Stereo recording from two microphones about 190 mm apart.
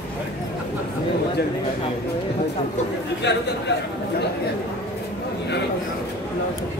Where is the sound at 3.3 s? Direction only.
65° left (ahead or behind).